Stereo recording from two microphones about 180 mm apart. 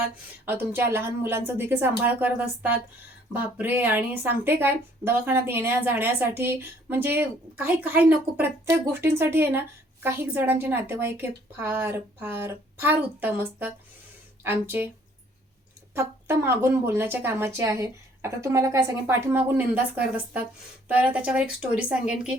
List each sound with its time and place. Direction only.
0.4 s speech: 10° right (ahead or behind)
16.0 s speech: 15° right (ahead or behind)
20.8 s speech: 10° right (ahead or behind)